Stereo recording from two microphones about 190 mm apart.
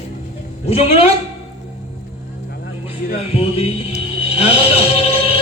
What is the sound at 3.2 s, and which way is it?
Music, 35° left (ahead or behind).